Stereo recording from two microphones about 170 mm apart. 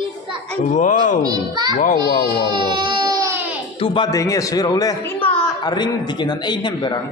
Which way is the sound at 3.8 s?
30° left (ahead or behind).